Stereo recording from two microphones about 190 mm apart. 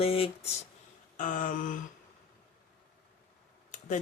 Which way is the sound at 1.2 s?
40° left (ahead or behind).